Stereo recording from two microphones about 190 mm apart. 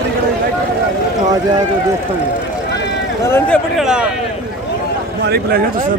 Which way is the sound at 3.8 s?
5° right (ahead or behind).